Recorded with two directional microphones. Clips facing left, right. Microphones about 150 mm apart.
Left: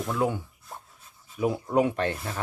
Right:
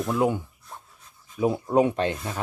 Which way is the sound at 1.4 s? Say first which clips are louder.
Right 3 dB; 25° right (ahead or behind).